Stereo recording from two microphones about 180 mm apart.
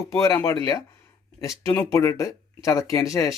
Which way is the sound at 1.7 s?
20° left (ahead or behind).